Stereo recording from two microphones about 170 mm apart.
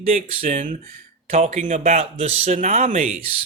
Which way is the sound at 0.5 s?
50° right (ahead or behind).